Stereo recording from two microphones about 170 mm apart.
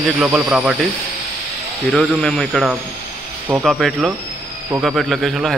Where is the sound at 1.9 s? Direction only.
5° left (ahead or behind).